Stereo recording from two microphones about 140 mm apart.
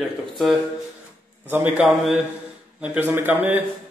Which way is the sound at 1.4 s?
10° right (ahead or behind).